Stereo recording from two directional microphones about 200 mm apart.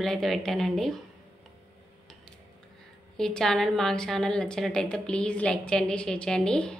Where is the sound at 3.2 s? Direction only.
5° left (ahead or behind).